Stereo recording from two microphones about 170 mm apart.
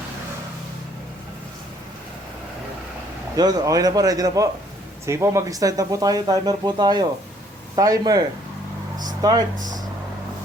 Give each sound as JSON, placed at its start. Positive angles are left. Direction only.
{"t": 3.3, "sound": "speech", "side_deg": -25}